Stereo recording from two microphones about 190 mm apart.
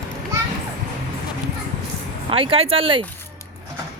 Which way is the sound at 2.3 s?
30° right (ahead or behind).